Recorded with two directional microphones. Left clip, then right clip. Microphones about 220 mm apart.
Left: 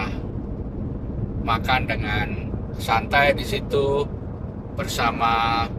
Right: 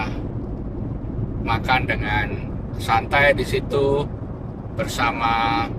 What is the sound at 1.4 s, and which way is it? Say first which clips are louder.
Speech: right 1 dB; 15° left (ahead or behind).